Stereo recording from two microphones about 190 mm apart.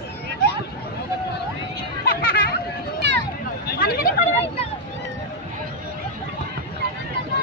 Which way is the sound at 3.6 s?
55° left (ahead or behind).